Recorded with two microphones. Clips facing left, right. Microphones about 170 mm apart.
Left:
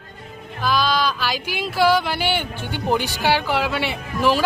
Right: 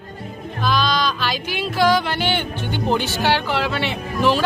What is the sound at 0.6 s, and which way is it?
Music, 10° left (ahead or behind).